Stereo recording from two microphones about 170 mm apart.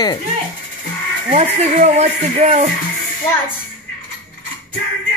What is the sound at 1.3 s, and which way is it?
Speech, 40° right (ahead or behind).